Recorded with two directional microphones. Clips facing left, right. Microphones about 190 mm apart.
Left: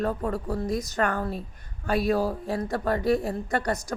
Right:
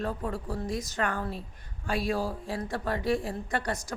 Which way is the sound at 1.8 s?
55° left (ahead or behind).